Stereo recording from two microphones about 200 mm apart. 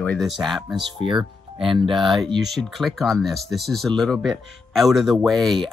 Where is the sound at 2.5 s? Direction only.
Centre (ahead or behind).